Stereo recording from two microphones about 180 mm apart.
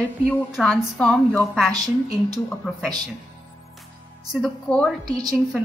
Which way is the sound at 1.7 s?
20° right (ahead or behind).